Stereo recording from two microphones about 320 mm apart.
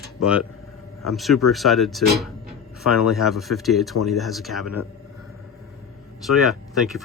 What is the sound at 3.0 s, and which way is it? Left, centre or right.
Speech, centre.